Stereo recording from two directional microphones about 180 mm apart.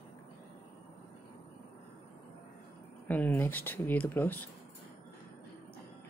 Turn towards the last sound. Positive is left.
turn(degrees=10)  # may be behind; listen again after turning